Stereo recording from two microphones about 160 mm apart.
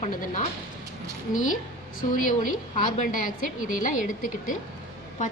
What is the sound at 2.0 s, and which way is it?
A woman's voice, 55° left (ahead or behind).